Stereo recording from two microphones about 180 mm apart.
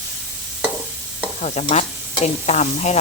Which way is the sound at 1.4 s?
40° left (ahead or behind).